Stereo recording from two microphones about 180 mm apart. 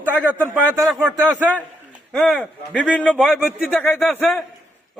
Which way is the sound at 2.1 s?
5° left (ahead or behind).